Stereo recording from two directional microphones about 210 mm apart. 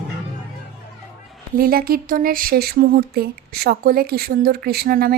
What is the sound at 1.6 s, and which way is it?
A woman's voice, 45° right (ahead or behind).